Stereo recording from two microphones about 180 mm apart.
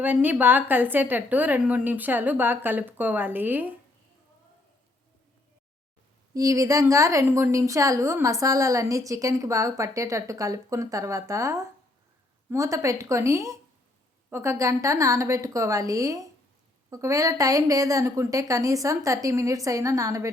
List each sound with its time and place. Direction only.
0.0 s a woman's voice: 10° right (ahead or behind)
6.3 s a woman's voice: 20° right (ahead or behind)